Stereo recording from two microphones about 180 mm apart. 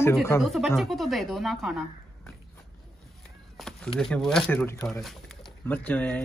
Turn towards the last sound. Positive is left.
turn(degrees=10)  # may be behind; listen again after turning